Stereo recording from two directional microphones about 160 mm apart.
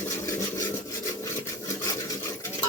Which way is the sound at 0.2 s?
20° left (ahead or behind).